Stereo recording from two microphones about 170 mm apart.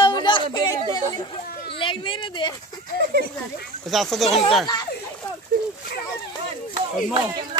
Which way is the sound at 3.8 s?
Centre (ahead or behind).